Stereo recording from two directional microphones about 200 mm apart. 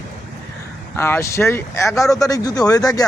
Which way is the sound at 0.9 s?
10° left (ahead or behind).